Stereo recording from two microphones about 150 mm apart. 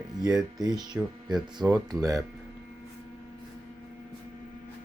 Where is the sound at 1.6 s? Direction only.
25° right (ahead or behind).